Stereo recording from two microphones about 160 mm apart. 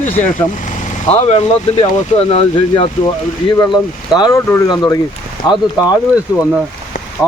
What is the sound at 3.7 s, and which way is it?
Speech, 25° left (ahead or behind).